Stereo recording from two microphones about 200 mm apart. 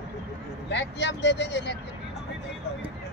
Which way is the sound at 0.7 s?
60° left (ahead or behind).